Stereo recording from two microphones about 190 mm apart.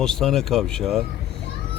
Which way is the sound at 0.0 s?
Centre (ahead or behind).